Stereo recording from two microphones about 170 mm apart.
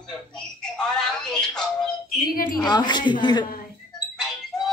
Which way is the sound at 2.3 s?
60° left (ahead or behind).